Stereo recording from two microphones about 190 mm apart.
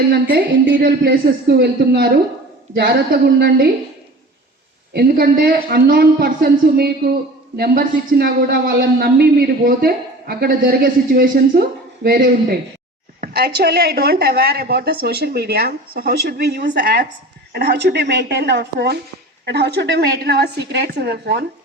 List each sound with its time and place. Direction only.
0.1 s a woman's voice: 60° right (ahead or behind)
4.9 s a man's voice: 55° right (ahead or behind)